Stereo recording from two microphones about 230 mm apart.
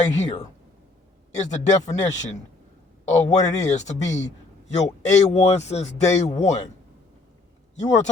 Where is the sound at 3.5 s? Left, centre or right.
Left.